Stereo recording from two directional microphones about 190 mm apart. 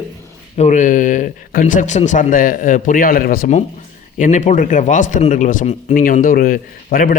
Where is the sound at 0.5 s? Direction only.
40° left (ahead or behind).